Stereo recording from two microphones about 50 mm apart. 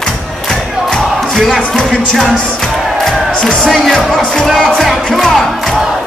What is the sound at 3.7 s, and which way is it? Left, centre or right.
Music, centre.